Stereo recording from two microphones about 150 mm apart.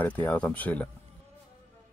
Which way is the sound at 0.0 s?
10° left (ahead or behind).